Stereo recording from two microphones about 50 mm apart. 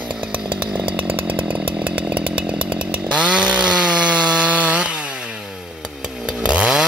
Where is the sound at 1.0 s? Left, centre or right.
Right.